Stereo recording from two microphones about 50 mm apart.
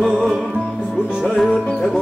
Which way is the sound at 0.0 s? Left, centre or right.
Centre.